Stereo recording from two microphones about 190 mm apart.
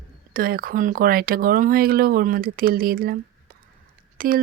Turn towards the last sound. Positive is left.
turn(degrees=-50)  # may be behind; listen again after turning